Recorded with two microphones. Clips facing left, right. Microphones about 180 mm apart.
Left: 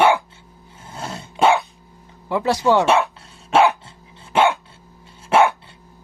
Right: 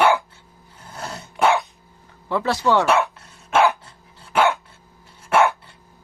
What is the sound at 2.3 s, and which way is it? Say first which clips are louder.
Speech: left 2 dB; 15° left (ahead or behind).